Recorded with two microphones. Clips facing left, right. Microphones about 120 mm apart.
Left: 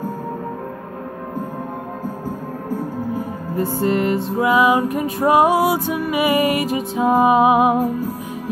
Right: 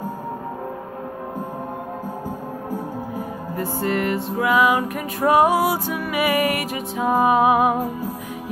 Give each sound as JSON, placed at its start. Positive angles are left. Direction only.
{"t": 3.5, "sound": "music", "side_deg": 25}